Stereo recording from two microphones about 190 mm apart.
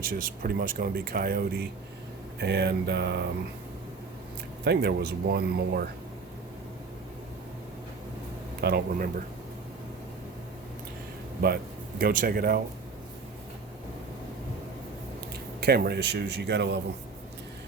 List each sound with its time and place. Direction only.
0.0 s speech: 50° right (ahead or behind)
4.6 s speech: 60° right (ahead or behind)
8.6 s speech: 55° right (ahead or behind)
11.4 s speech: 55° right (ahead or behind)
15.6 s speech: 55° right (ahead or behind)